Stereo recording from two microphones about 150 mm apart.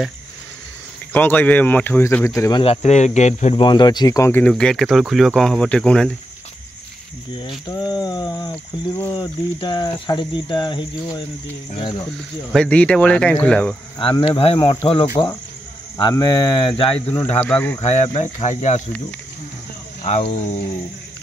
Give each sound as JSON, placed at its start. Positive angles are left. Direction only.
{"t": 1.1, "sound": "speech", "side_deg": 10}
{"t": 2.6, "sound": "speech", "side_deg": 45}
{"t": 3.5, "sound": "speech", "side_deg": 30}
{"t": 4.5, "sound": "speech", "side_deg": 5}
{"t": 7.3, "sound": "speech", "side_deg": 30}
{"t": 12.5, "sound": "speech", "side_deg": 10}
{"t": 13.9, "sound": "speech", "side_deg": 35}
{"t": 17.4, "sound": "speech", "side_deg": 10}
{"t": 17.8, "sound": "speech", "side_deg": 45}
{"t": 20.0, "sound": "speech", "side_deg": 50}